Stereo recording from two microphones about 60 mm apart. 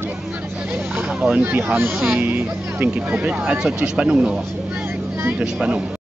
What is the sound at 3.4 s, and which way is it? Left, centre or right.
Speech, centre.